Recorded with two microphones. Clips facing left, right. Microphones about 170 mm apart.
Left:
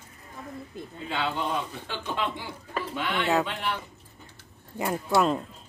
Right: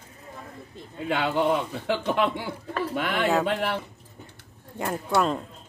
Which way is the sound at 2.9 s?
50° right (ahead or behind).